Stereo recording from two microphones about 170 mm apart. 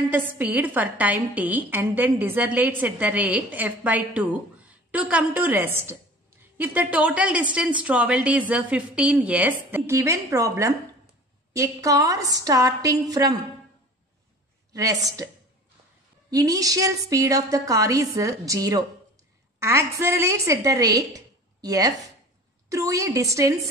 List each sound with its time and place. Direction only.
0.1 s a woman's voice: 10° right (ahead or behind)
14.7 s a woman's voice: 20° right (ahead or behind)